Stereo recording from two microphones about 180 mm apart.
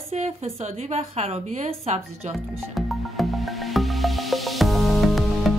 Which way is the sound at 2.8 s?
Centre (ahead or behind).